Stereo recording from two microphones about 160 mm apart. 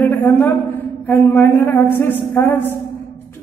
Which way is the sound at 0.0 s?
10° left (ahead or behind).